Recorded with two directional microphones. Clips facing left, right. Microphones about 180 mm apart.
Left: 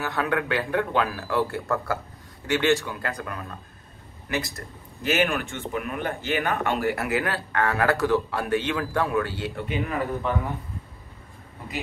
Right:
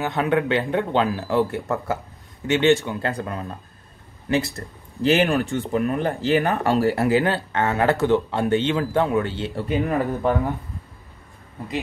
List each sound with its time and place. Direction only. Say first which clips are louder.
0.0 s speech: right 5 dB; 20° right (ahead or behind)
4.6 s speech: right 9 dB; 30° right (ahead or behind)
9.7 s speech: right 6 dB; 40° right (ahead or behind)